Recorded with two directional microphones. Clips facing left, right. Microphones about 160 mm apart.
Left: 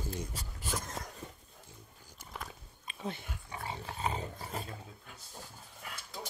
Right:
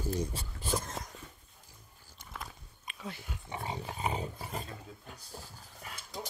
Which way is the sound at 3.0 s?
25° left (ahead or behind).